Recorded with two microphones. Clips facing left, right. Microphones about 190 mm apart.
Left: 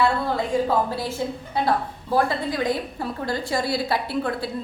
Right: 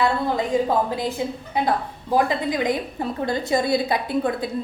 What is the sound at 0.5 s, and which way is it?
A woman's voice, 20° right (ahead or behind).